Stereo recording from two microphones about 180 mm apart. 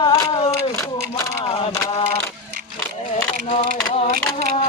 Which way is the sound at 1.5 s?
25° left (ahead or behind).